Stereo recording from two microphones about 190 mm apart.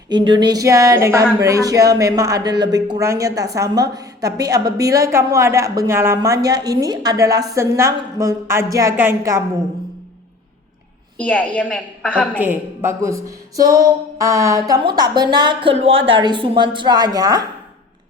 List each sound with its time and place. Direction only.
0.1 s a woman's voice: 25° right (ahead or behind)
11.2 s a woman's voice: 10° left (ahead or behind)
12.4 s a woman's voice: 10° right (ahead or behind)